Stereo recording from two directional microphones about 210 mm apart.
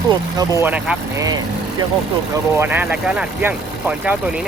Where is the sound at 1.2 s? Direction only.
20° right (ahead or behind).